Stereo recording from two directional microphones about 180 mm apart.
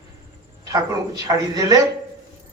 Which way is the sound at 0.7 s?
20° right (ahead or behind).